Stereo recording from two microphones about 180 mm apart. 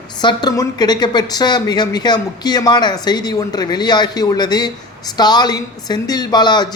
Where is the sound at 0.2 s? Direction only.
25° left (ahead or behind).